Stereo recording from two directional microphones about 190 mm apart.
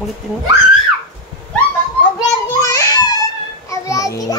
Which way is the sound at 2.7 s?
20° left (ahead or behind).